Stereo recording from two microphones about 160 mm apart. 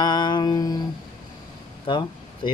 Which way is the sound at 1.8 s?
30° left (ahead or behind).